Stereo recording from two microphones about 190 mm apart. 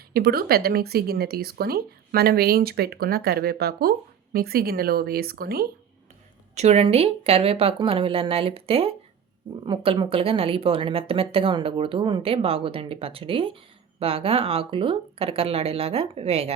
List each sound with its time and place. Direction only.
0.1 s speech: 50° right (ahead or behind)
6.6 s a woman's voice: 35° right (ahead or behind)